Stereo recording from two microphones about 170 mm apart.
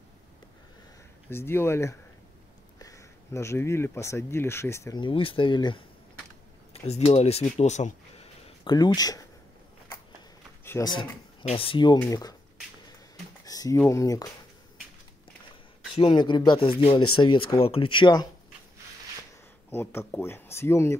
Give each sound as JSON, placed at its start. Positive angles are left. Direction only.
{"t": 1.3, "sound": "speech", "side_deg": 15}
{"t": 6.9, "sound": "speech", "side_deg": 40}
{"t": 8.6, "sound": "speech", "side_deg": 25}
{"t": 10.6, "sound": "a sound", "side_deg": 15}
{"t": 11.4, "sound": "speech", "side_deg": 30}
{"t": 13.5, "sound": "a sound", "side_deg": 20}
{"t": 13.7, "sound": "speech", "side_deg": 20}
{"t": 15.9, "sound": "speech", "side_deg": 30}
{"t": 19.7, "sound": "speech", "side_deg": 15}